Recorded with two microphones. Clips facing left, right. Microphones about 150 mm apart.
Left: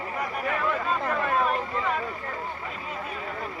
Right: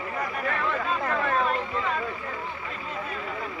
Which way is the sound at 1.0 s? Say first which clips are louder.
Even; 10° left (ahead or behind).